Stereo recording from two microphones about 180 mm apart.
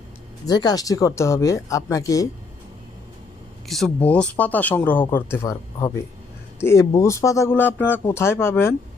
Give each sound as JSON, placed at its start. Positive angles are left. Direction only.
{"t": 0.4, "sound": "speech", "side_deg": 20}
{"t": 3.7, "sound": "speech", "side_deg": 0}